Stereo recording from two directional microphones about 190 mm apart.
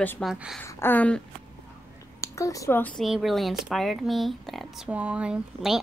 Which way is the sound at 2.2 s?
15° left (ahead or behind).